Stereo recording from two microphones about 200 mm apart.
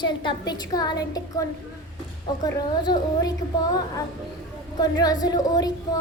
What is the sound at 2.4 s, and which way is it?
Speech, 20° left (ahead or behind).